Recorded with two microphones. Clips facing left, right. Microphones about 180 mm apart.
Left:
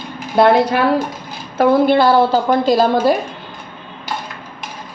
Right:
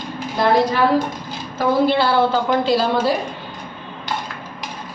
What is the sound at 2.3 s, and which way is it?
Speech, 40° left (ahead or behind).